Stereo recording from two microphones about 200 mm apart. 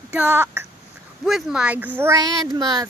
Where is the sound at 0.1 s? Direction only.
10° right (ahead or behind).